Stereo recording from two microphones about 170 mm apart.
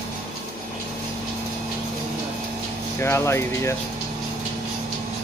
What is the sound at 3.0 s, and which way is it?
Speech, 15° left (ahead or behind).